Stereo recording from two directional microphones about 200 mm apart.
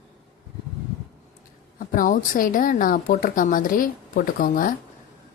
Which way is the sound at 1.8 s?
45° left (ahead or behind).